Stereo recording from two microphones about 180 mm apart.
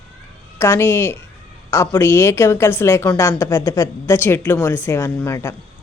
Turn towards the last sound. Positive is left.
turn(degrees=15)  # may be behind; listen again after turning